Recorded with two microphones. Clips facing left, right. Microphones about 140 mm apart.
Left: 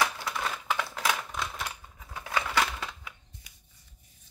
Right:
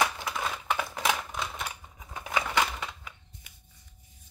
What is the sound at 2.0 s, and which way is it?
Scissors, 15° right (ahead or behind).